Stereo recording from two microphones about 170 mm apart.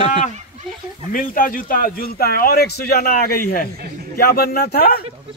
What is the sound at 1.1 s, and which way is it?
Speech, 55° left (ahead or behind).